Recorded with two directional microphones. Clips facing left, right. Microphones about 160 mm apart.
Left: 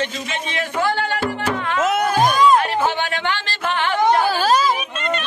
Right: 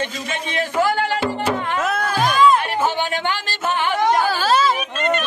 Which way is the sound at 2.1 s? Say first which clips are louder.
Right 1 dB; 45° left (ahead or behind).